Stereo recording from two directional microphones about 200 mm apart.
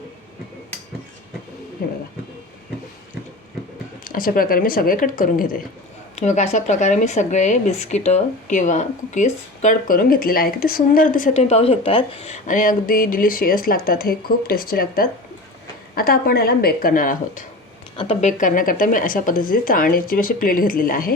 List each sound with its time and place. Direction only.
1.8 s speech: 50° left (ahead or behind)
4.0 s speech: 45° left (ahead or behind)
17.9 s speech: 25° left (ahead or behind); by 21.1 s 45° left (ahead or behind)